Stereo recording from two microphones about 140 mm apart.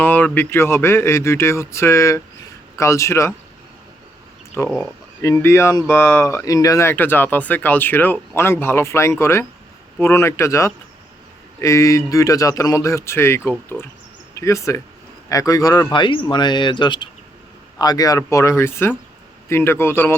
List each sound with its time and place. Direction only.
0.0 s a sound: 15° left (ahead or behind)
0.3 s a man's voice: 15° left (ahead or behind)
4.5 s a man's voice: 15° left (ahead or behind)